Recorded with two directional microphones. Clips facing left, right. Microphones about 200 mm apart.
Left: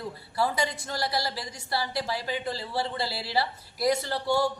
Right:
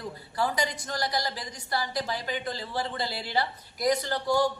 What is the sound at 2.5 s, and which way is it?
Speech, 30° left (ahead or behind).